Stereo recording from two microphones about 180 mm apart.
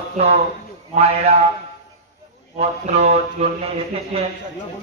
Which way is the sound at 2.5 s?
40° right (ahead or behind).